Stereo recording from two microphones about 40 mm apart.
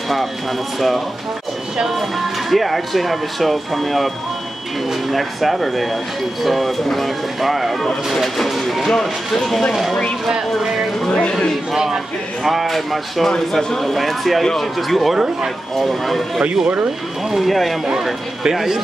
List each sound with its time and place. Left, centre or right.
0.7 s speech: centre
5.1 s speech: centre
11.1 s speech: left
11.7 s speech: centre
17.3 s speech: centre
18.4 s speech: centre